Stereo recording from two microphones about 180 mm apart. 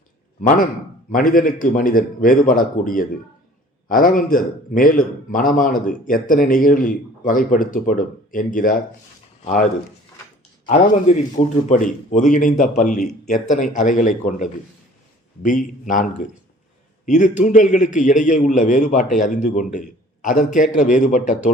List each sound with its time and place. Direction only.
0.4 s a man's voice: 50° left (ahead or behind)
10.7 s a man's voice: 40° left (ahead or behind)
15.4 s a man's voice: 45° left (ahead or behind)